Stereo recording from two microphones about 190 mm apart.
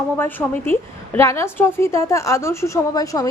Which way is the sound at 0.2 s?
10° left (ahead or behind).